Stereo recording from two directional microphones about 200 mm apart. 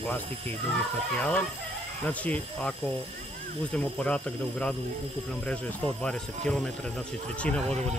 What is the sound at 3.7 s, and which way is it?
Speech, 5° left (ahead or behind).